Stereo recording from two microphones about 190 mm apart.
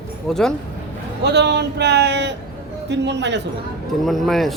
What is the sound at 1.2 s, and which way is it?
A man's voice, 60° right (ahead or behind).